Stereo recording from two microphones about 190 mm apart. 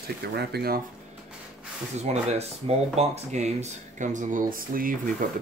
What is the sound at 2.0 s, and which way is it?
Speech, 35° right (ahead or behind).